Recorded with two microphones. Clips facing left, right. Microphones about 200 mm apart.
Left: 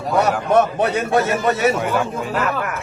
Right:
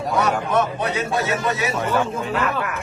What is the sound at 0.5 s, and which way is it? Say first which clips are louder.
A man's voice: left 5 dB; 60° left (ahead or behind).